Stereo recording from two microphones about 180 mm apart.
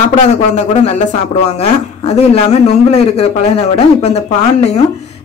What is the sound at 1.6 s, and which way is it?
Speech, 35° left (ahead or behind).